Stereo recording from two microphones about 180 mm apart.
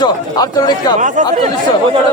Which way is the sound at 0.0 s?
25° left (ahead or behind).